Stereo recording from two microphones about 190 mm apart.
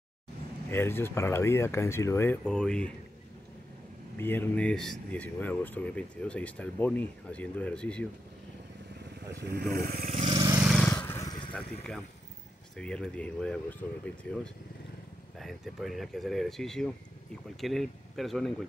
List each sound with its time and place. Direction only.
0.7 s speech: 10° left (ahead or behind)
4.2 s speech: 10° left (ahead or behind)
9.4 s speech: 60° right (ahead or behind)
10.0 s vehicle: 35° right (ahead or behind)
10.3 s vehicle: 20° right (ahead or behind)
10.8 s vehicle: 10° left (ahead or behind)
12.7 s speech: 5° left (ahead or behind)